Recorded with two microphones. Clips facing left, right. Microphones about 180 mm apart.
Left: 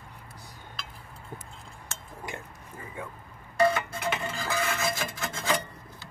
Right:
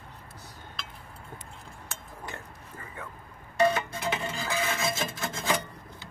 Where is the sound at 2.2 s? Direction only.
15° left (ahead or behind).